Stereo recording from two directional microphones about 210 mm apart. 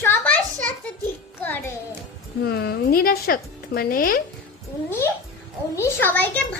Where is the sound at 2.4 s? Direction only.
50° left (ahead or behind).